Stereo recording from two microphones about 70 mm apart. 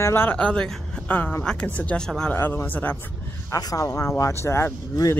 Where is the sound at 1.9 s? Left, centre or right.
Centre.